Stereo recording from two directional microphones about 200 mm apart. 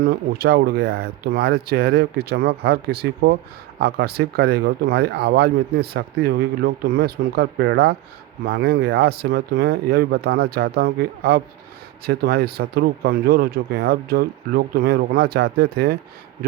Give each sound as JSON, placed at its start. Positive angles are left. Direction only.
{"t": 0.0, "sound": "speech", "side_deg": -55}